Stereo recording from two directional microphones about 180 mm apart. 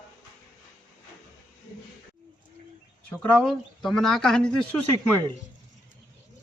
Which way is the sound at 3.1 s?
5° left (ahead or behind).